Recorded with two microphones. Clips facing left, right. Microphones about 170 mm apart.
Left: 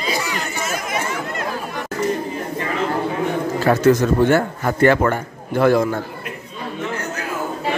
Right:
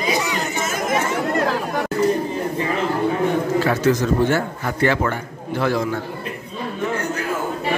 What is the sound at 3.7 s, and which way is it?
A man's voice, 55° left (ahead or behind).